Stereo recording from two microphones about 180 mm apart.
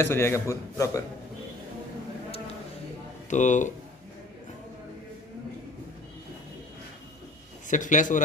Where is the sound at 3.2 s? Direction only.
40° left (ahead or behind).